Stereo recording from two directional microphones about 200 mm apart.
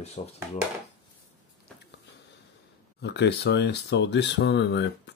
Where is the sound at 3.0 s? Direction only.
55° left (ahead or behind).